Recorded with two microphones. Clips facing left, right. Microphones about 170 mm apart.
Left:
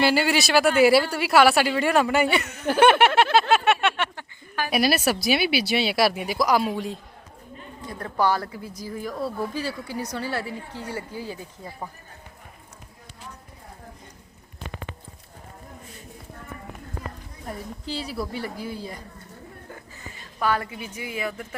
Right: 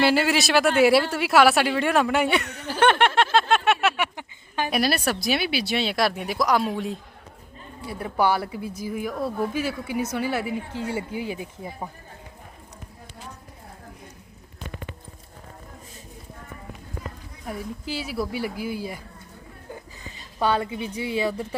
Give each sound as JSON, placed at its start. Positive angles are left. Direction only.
{"t": 0.0, "sound": "speech", "side_deg": 0}
{"t": 2.8, "sound": "a sound", "side_deg": 10}
{"t": 4.7, "sound": "speech", "side_deg": 5}
{"t": 17.4, "sound": "speech", "side_deg": -5}
{"t": 20.4, "sound": "a woman's voice", "side_deg": -25}